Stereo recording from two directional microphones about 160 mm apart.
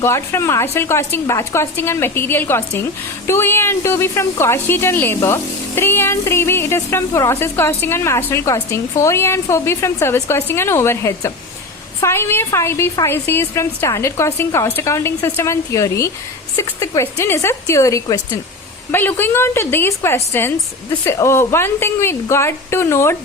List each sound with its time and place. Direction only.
0.0 s a woman's voice: 15° left (ahead or behind)